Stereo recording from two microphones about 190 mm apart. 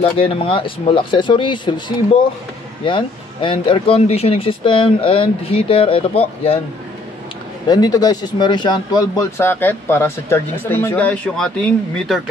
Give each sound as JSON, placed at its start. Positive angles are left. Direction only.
{"t": 0.0, "sound": "speech", "side_deg": 30}
{"t": 2.8, "sound": "speech", "side_deg": 25}
{"t": 7.6, "sound": "speech", "side_deg": 20}